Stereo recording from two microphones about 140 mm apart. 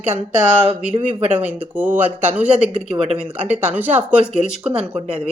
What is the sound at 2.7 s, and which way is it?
Speech, 45° right (ahead or behind).